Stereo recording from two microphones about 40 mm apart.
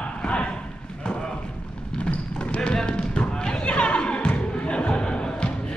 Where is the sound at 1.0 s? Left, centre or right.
Centre.